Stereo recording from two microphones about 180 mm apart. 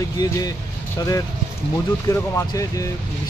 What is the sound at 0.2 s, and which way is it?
Speech, 20° left (ahead or behind).